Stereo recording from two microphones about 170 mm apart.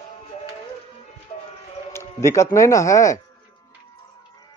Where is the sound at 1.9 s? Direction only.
15° left (ahead or behind).